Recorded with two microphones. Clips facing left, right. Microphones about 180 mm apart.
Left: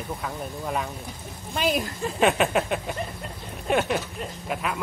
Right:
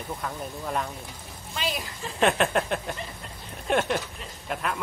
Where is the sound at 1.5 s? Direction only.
50° left (ahead or behind).